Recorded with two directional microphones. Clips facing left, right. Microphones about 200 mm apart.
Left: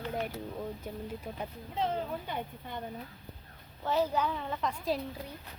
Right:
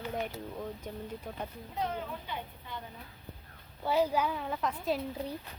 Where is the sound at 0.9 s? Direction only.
10° left (ahead or behind).